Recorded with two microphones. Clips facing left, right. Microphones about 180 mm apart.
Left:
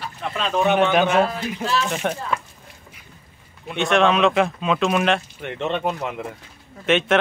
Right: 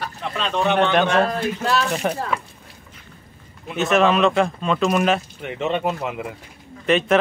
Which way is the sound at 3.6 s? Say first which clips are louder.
Right 1 dB; 5° right (ahead or behind).